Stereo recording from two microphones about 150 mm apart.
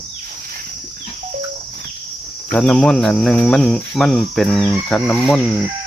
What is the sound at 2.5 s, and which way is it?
Cricket, 5° left (ahead or behind).